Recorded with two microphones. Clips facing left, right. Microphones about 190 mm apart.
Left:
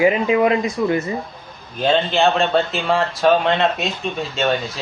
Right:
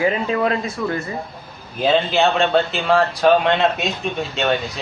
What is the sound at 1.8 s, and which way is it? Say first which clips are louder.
A man's voice: even; centre (ahead or behind).